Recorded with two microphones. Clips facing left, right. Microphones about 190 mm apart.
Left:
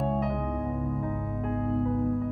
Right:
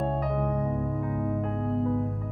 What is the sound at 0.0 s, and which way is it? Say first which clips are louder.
Music: right 1 dB; centre (ahead or behind).